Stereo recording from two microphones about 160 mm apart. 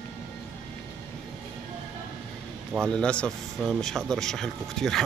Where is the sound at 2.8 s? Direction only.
5° left (ahead or behind).